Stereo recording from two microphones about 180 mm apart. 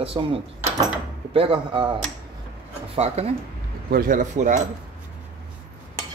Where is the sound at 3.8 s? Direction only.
55° right (ahead or behind).